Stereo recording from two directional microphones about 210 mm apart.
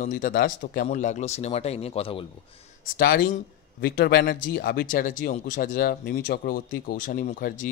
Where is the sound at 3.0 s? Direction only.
40° left (ahead or behind).